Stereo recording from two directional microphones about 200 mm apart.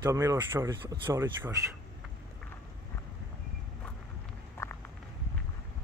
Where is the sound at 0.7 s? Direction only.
20° right (ahead or behind).